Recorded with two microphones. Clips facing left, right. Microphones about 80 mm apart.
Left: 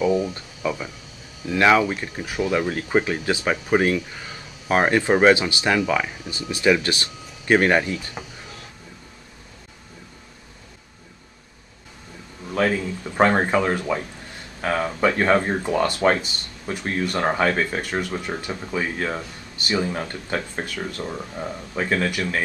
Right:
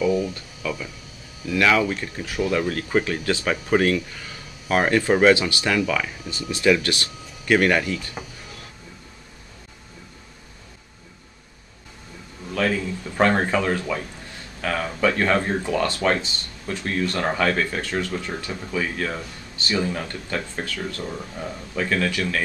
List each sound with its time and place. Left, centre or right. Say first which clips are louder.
0.0 s a sound: left 1 dB; left
1.5 s speech: left 2 dB; left
12.5 s speech: left 2 dB; left